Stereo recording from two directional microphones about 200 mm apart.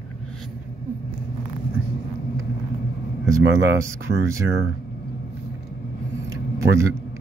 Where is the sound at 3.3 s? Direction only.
15° right (ahead or behind).